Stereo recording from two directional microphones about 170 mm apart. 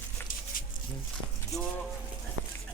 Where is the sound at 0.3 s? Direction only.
55° left (ahead or behind).